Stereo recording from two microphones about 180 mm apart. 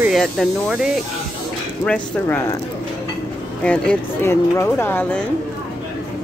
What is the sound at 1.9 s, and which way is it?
Speech, 15° left (ahead or behind).